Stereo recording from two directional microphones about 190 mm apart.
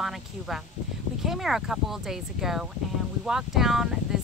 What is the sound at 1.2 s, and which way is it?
Speech, centre (ahead or behind).